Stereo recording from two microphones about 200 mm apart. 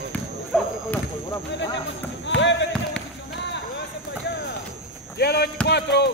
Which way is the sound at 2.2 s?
65° left (ahead or behind).